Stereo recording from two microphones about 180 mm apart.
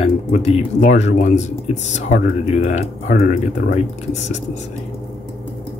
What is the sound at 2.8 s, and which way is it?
Speech, 40° left (ahead or behind).